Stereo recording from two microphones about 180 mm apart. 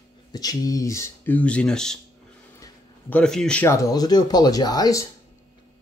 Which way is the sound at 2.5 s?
15° left (ahead or behind).